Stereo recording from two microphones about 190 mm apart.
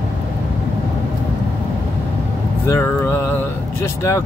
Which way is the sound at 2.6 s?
15° left (ahead or behind).